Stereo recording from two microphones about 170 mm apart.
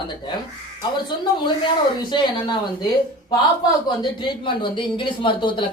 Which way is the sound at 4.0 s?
30° left (ahead or behind).